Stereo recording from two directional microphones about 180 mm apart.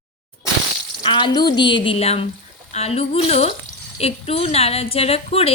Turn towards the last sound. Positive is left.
turn(degrees=35)  # may be behind; listen again after turning